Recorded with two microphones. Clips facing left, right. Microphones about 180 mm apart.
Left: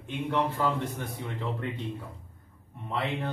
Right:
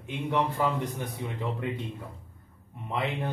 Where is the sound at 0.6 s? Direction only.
15° right (ahead or behind).